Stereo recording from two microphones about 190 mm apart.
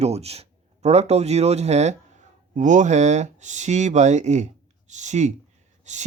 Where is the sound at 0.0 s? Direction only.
35° right (ahead or behind).